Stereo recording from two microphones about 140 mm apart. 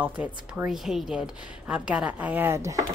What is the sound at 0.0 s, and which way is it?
A woman's voice, 10° right (ahead or behind).